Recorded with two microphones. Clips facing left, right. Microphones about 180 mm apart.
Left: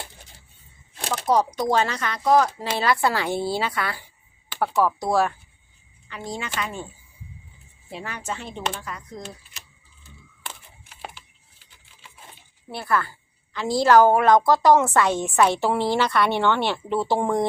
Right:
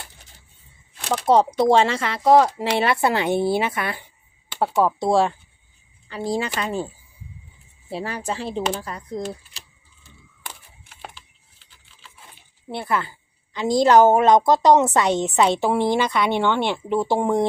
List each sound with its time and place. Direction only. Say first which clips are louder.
1.1 s a woman's voice: right 4 dB; 25° right (ahead or behind)
7.9 s speech: right 5 dB; 35° right (ahead or behind)
10.8 s a sound: left 1 dB; 5° left (ahead or behind)
12.7 s a woman's voice: even; 20° right (ahead or behind)